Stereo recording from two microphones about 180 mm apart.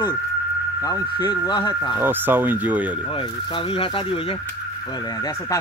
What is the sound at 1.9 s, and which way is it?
Speech, 10° right (ahead or behind).